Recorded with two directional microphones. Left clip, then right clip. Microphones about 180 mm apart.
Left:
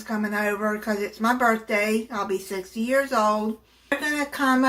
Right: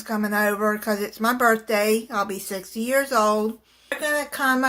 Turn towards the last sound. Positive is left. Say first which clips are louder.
# right 1 dB
turn(degrees=-55)  # may be behind; listen again after turning